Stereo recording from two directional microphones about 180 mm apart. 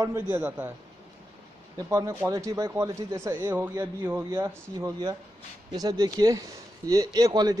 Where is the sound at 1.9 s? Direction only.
20° right (ahead or behind).